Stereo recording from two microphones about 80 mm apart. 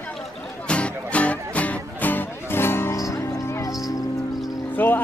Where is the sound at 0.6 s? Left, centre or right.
Centre; by 3.0 s left.